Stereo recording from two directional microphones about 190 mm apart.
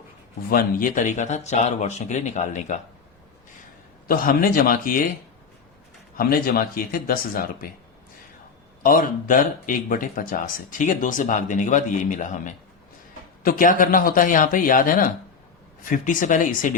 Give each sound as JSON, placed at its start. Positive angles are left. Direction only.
{"t": 0.5, "sound": "speech", "side_deg": 45}
{"t": 4.1, "sound": "speech", "side_deg": 50}
{"t": 6.1, "sound": "speech", "side_deg": 50}
{"t": 8.8, "sound": "speech", "side_deg": 45}